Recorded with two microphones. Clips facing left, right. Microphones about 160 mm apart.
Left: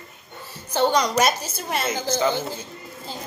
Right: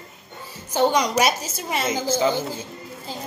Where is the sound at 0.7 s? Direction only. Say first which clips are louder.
Even; 10° right (ahead or behind).